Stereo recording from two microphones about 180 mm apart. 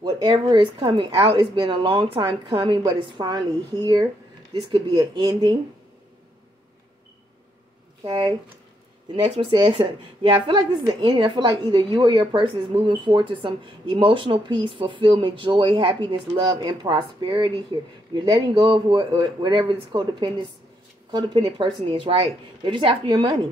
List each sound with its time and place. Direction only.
0.0 s a woman's voice: 25° right (ahead or behind)
8.1 s a woman's voice: 20° right (ahead or behind)